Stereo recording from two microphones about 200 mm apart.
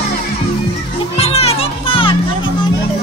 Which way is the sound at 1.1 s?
30° left (ahead or behind).